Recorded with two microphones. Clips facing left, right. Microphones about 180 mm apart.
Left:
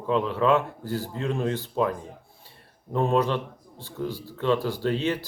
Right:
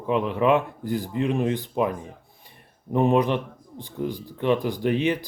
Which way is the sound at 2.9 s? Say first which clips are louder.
Right 3 dB; 15° right (ahead or behind).